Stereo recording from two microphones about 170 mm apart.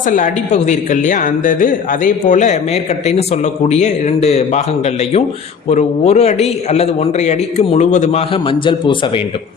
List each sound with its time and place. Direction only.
0.5 s speech: 45° left (ahead or behind)
3.7 s a man's voice: 40° left (ahead or behind)
5.6 s a man's voice: 40° left (ahead or behind)